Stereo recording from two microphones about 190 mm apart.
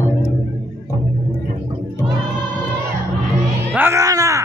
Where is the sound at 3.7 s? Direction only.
10° right (ahead or behind).